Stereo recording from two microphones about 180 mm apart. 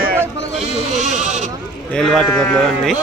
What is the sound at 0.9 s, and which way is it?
Sheep, 40° right (ahead or behind).